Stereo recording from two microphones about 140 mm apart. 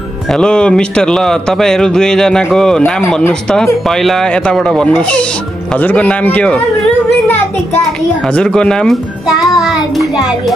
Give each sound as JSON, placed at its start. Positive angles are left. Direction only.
{"t": 0.3, "sound": "a man's voice", "side_deg": 5}